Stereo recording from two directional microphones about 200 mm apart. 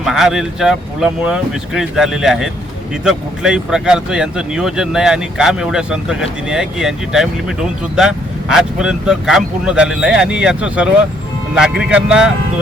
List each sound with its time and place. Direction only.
0.0 s speech: centre (ahead or behind)